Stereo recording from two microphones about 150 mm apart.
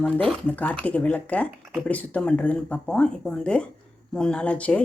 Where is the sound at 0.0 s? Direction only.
5° left (ahead or behind).